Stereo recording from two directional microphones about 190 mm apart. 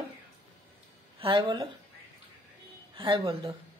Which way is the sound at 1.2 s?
25° right (ahead or behind).